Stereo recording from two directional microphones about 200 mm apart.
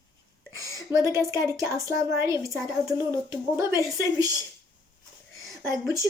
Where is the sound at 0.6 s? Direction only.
15° right (ahead or behind).